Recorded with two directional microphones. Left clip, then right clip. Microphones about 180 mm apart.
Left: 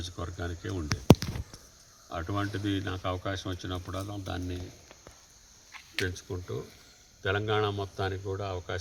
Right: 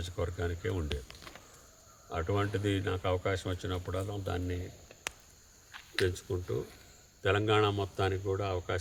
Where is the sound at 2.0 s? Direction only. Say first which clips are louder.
Right 1 dB; 10° right (ahead or behind).